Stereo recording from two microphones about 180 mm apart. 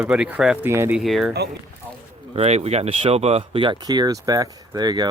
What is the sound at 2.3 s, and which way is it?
Speech, 35° right (ahead or behind).